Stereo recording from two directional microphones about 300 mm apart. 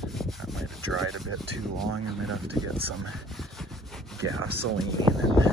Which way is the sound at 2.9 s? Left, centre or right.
Centre.